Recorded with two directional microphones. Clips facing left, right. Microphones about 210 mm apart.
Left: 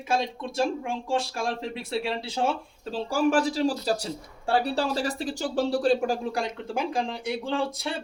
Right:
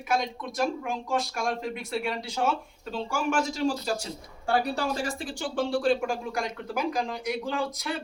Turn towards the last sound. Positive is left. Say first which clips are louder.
# left 2 dB
turn(degrees=30)  # may be behind; listen again after turning